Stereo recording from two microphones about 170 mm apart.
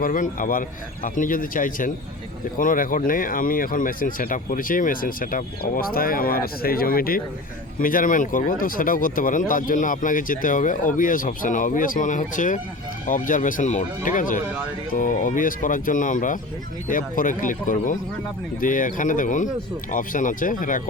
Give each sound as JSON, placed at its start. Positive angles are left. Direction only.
{"t": 0.0, "sound": "speech", "side_deg": 55}